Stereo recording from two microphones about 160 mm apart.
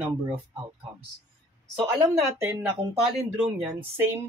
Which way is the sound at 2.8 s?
40° right (ahead or behind).